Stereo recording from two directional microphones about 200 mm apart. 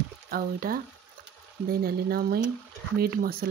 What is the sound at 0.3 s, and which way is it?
Speech, 45° right (ahead or behind).